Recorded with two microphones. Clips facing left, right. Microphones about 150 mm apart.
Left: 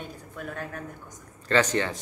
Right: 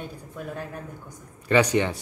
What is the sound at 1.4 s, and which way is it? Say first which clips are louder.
Speech: right 3 dB; 10° right (ahead or behind).